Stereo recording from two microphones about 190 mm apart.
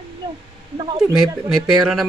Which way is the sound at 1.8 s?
Centre (ahead or behind).